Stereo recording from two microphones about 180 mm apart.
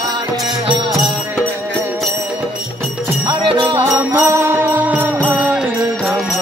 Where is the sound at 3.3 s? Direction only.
25° right (ahead or behind).